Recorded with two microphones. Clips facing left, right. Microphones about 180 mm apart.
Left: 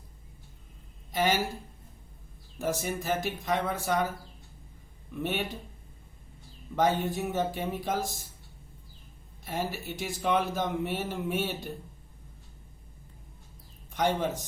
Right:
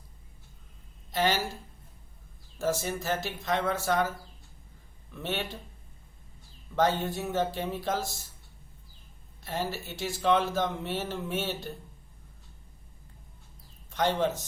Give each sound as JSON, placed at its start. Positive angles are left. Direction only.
{"t": 1.1, "sound": "a woman's voice", "side_deg": 10}
{"t": 2.6, "sound": "a man's voice", "side_deg": 15}
{"t": 6.7, "sound": "a man's voice", "side_deg": 15}
{"t": 9.4, "sound": "a man's voice", "side_deg": 15}
{"t": 13.9, "sound": "a man's voice", "side_deg": 15}